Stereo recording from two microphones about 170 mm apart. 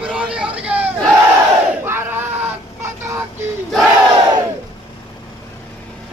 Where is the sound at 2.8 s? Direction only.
15° right (ahead or behind).